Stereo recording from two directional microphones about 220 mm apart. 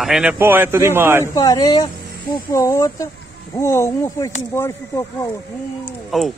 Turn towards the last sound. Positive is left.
turn(degrees=0)  # may be behind; listen again after turning